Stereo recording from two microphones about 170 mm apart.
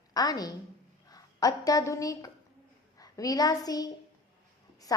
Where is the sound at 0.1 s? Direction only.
20° left (ahead or behind).